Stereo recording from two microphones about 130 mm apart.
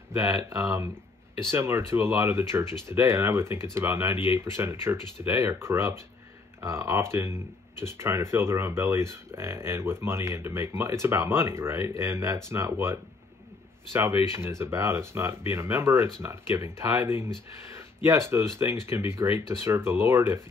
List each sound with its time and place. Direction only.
1.5 s speech: 20° right (ahead or behind)
14.3 s speech: 20° right (ahead or behind)